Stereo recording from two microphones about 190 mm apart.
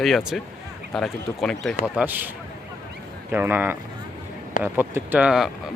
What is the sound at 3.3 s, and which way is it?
Speech, 10° right (ahead or behind).